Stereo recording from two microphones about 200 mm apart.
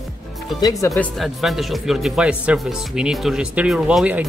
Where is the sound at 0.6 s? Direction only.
15° left (ahead or behind).